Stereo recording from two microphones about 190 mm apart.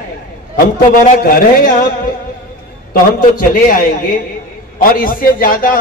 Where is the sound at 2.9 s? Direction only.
50° left (ahead or behind).